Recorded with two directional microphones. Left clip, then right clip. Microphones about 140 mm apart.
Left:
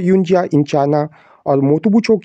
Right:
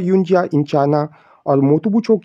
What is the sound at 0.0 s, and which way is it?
Speech, 20° left (ahead or behind).